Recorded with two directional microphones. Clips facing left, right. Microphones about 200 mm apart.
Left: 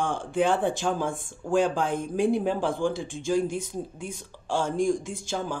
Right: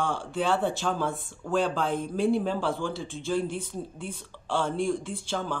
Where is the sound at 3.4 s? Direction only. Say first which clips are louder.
Left 3 dB; 45° left (ahead or behind).